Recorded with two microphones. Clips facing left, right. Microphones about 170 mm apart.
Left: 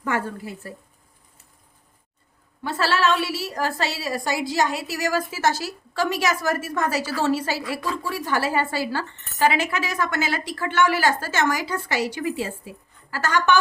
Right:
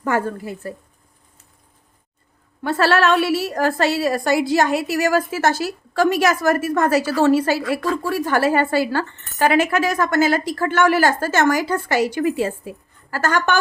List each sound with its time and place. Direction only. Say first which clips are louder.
0.0 s a woman's voice: right 5 dB; 45° right (ahead or behind)
2.6 s a woman's voice: right 5 dB; 60° right (ahead or behind)